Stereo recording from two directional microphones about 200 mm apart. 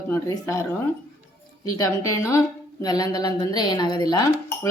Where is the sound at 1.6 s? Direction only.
15° left (ahead or behind).